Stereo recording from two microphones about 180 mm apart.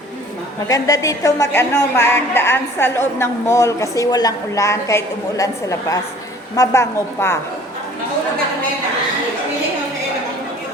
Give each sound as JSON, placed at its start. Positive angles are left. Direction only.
{"t": 0.7, "sound": "a woman's voice", "side_deg": 20}